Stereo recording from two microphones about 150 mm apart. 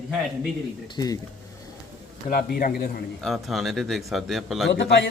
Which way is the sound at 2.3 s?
70° left (ahead or behind).